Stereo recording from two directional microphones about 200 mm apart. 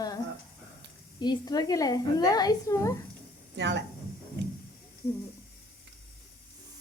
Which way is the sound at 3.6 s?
60° right (ahead or behind).